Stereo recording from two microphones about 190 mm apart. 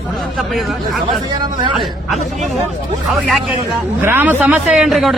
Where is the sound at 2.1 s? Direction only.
40° right (ahead or behind).